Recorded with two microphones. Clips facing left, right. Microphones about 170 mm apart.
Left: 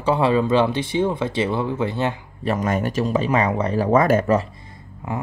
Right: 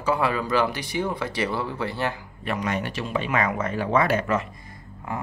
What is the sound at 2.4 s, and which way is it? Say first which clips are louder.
Speech: left 5 dB; 45° left (ahead or behind).